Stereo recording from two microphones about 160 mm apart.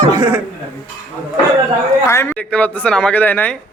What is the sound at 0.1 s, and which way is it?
Chuckle, 20° right (ahead or behind).